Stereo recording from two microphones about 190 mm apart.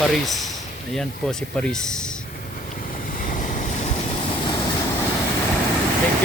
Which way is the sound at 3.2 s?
45° left (ahead or behind).